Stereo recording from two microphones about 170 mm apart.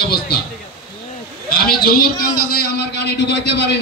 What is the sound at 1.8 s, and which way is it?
Speech, 60° left (ahead or behind).